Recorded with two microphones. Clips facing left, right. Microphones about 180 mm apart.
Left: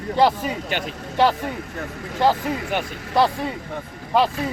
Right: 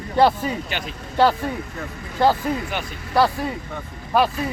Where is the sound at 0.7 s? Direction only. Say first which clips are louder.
Left 3 dB; 50° left (ahead or behind).